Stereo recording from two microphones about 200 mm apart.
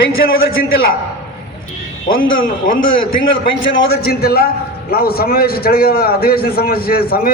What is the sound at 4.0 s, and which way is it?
A man's voice, 50° left (ahead or behind).